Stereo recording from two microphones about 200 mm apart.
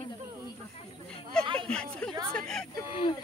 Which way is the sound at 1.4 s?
25° right (ahead or behind).